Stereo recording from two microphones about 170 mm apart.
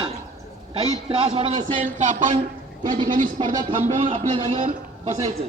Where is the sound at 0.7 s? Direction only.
35° right (ahead or behind).